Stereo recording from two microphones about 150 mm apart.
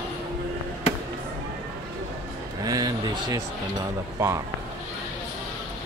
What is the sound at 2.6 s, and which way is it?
Speech, 25° right (ahead or behind).